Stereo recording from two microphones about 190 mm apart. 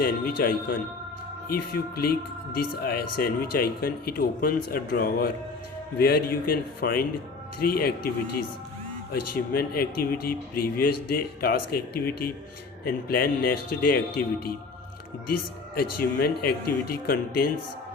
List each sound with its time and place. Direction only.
0.0 s a man's voice: 50° left (ahead or behind)
9.3 s a man's voice: 50° left (ahead or behind)
15.7 s a man's voice: 50° left (ahead or behind)